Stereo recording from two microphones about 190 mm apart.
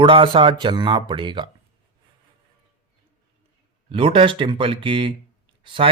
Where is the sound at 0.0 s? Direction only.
25° right (ahead or behind).